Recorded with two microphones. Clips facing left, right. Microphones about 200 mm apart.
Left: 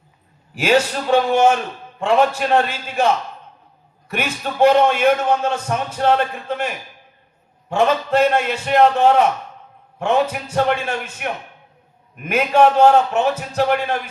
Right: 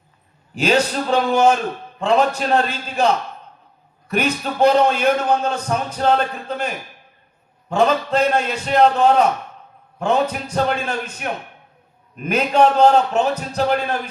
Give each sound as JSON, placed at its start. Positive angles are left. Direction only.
{"t": 0.5, "sound": "a man's voice", "side_deg": -35}
{"t": 4.1, "sound": "a man's voice", "side_deg": -35}
{"t": 10.5, "sound": "a man's voice", "side_deg": -35}